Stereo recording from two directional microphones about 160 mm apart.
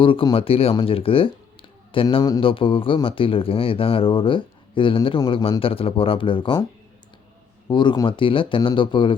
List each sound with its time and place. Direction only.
0.0 s speech: 30° left (ahead or behind)
7.7 s speech: 30° left (ahead or behind)